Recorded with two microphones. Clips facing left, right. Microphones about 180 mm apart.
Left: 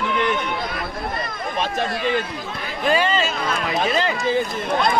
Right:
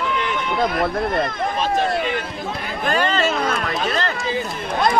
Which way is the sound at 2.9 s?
5° left (ahead or behind).